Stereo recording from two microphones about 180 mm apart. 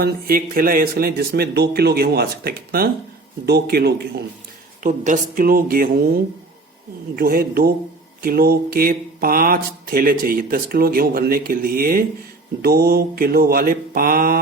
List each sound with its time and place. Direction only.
0.0 s speech: 55° right (ahead or behind)
4.8 s speech: 45° right (ahead or behind)